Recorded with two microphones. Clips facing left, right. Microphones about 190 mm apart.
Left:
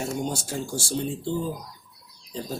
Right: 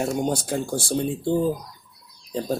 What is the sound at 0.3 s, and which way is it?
Speech, 60° right (ahead or behind).